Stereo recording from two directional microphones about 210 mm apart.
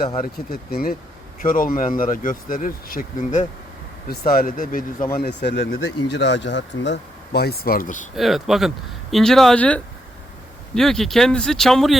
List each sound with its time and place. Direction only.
0.2 s speech: 45° left (ahead or behind)
5.1 s speech: 50° left (ahead or behind)
8.1 s speech: centre (ahead or behind)